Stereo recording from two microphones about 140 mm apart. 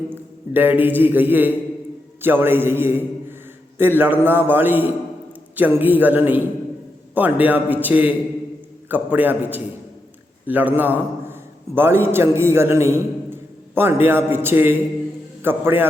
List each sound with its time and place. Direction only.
0.1 s a man's voice: 15° right (ahead or behind)